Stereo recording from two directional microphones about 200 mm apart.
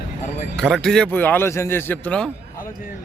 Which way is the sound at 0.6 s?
Centre (ahead or behind).